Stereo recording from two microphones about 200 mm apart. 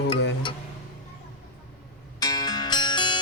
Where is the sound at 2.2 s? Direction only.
20° left (ahead or behind).